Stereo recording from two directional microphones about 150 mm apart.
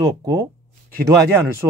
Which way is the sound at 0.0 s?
25° right (ahead or behind).